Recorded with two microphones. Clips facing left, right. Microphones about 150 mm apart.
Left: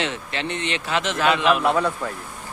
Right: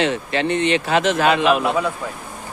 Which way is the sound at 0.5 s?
5° right (ahead or behind).